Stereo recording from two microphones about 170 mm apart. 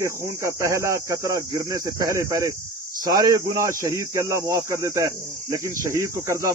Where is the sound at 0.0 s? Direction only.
15° right (ahead or behind).